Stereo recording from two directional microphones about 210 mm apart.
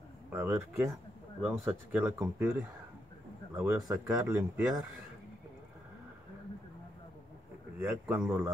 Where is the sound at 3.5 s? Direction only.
15° right (ahead or behind).